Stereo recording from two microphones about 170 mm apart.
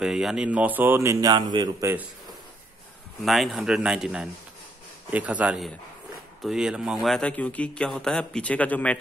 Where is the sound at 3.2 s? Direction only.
Centre (ahead or behind).